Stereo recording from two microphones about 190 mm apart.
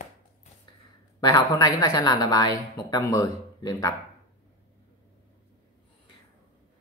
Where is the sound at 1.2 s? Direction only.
20° left (ahead or behind).